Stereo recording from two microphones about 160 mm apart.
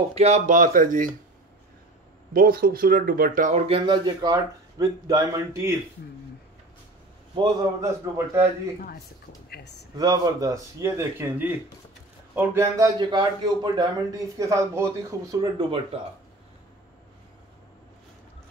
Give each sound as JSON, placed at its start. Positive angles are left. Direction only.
{"t": 0.1, "sound": "speech", "side_deg": -45}
{"t": 2.3, "sound": "speech", "side_deg": -65}
{"t": 7.3, "sound": "a man's voice", "side_deg": -20}
{"t": 9.5, "sound": "speech", "side_deg": 90}
{"t": 9.9, "sound": "speech", "side_deg": -25}